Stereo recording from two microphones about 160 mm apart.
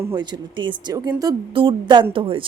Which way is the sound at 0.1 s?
30° right (ahead or behind).